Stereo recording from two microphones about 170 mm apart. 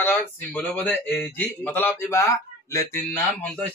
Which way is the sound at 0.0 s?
15° left (ahead or behind).